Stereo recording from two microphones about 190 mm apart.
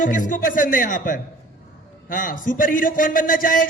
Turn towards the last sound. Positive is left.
turn(degrees=45)  # may be behind; listen again after turning